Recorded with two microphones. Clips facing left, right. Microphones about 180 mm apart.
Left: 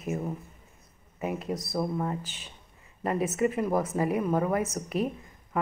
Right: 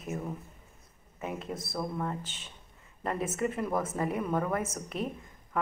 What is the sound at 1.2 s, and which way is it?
Speech, 5° left (ahead or behind).